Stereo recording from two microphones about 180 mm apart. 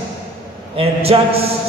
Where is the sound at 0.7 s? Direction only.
35° right (ahead or behind).